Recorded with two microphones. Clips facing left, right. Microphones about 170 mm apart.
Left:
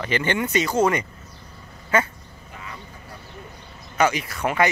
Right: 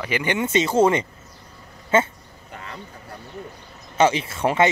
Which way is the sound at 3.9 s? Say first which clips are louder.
Right 3 dB; 30° right (ahead or behind).